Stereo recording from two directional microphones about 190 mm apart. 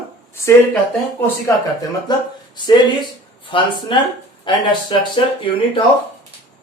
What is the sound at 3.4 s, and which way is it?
Speech, 25° left (ahead or behind).